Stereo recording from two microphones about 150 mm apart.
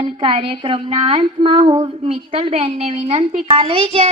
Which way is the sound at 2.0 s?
40° right (ahead or behind).